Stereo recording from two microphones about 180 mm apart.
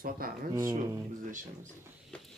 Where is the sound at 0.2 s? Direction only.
55° right (ahead or behind).